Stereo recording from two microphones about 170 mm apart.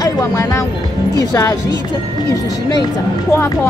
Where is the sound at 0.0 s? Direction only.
20° left (ahead or behind).